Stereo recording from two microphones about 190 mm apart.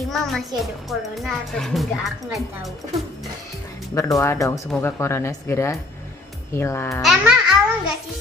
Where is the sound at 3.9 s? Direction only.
15° left (ahead or behind).